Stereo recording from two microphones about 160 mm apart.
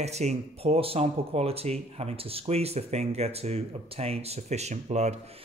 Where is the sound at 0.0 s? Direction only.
45° right (ahead or behind).